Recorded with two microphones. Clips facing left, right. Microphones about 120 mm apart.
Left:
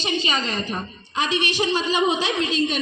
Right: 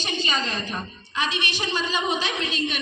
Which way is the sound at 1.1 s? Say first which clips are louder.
Left 5 dB; 35° left (ahead or behind).